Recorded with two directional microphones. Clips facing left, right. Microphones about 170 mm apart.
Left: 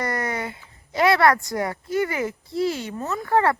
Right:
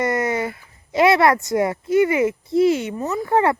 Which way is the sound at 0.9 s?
20° right (ahead or behind).